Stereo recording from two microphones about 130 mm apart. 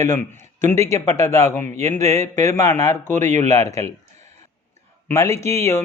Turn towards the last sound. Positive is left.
turn(degrees=20)  # may be behind; listen again after turning